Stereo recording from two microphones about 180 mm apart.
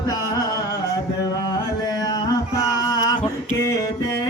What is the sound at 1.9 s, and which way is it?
Male singing, 20° left (ahead or behind).